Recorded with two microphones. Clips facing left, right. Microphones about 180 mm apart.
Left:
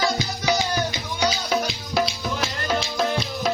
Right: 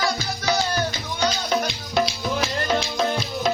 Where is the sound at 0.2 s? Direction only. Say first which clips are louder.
Even; 15° left (ahead or behind).